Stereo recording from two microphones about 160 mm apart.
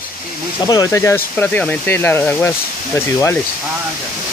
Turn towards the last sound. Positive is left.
turn(degrees=15)  # may be behind; listen again after turning